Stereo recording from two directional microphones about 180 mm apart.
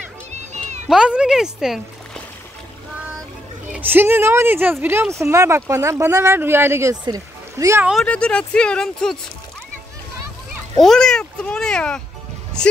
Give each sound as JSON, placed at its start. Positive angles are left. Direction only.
{"t": 0.3, "sound": "music", "side_deg": -40}
{"t": 0.8, "sound": "splash", "side_deg": -5}
{"t": 3.7, "sound": "speech", "side_deg": -10}
{"t": 7.8, "sound": "speech", "side_deg": 0}
{"t": 10.8, "sound": "speech", "side_deg": 0}